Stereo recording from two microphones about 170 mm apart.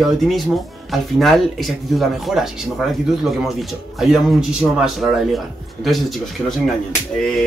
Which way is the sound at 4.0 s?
5° right (ahead or behind).